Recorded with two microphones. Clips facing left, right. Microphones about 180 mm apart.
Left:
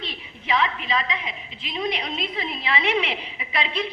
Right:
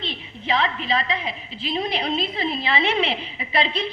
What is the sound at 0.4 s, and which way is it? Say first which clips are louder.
A woman's voice: right 1 dB; 30° right (ahead or behind).